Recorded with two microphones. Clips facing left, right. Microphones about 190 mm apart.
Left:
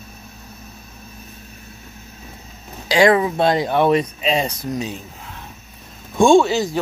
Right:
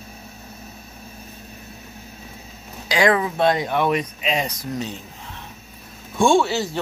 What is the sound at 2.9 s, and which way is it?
Speech, 30° left (ahead or behind).